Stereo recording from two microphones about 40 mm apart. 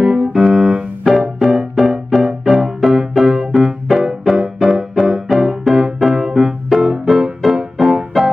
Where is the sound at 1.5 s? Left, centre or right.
Centre.